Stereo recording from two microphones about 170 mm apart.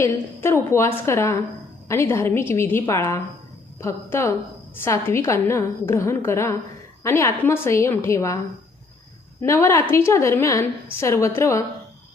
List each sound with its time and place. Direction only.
0.0 s a woman's voice: 15° left (ahead or behind)
9.4 s a woman's voice: 15° left (ahead or behind)